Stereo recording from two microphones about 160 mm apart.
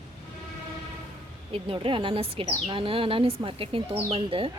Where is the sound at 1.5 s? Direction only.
35° right (ahead or behind).